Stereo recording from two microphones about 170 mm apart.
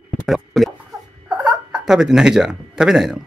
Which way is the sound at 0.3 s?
Centre (ahead or behind).